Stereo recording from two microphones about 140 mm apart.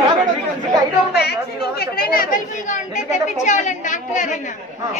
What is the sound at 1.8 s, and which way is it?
Chatter, 90° left.